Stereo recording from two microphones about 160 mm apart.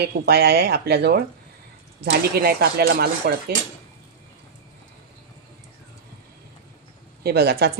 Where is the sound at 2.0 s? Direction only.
80° right.